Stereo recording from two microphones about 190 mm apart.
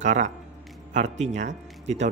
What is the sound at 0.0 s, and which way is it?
Speech, 40° right (ahead or behind).